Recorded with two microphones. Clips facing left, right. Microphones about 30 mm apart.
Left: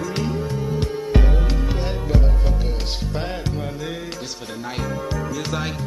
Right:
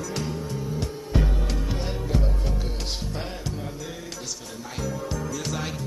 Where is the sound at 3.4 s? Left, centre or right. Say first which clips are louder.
Left 6 dB; left.